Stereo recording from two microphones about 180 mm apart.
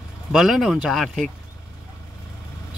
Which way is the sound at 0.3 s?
Centre (ahead or behind).